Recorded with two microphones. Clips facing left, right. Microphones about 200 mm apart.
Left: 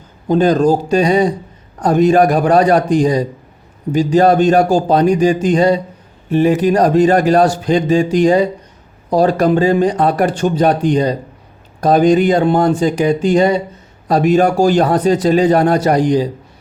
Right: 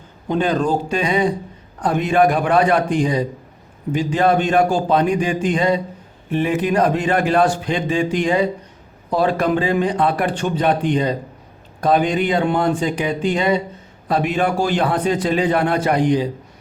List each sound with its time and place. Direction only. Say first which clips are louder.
0.3 s speech: left 7 dB; 40° left (ahead or behind)